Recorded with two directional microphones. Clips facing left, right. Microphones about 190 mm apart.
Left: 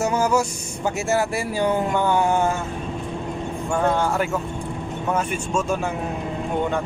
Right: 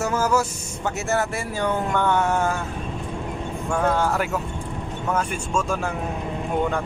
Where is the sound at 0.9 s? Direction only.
15° left (ahead or behind).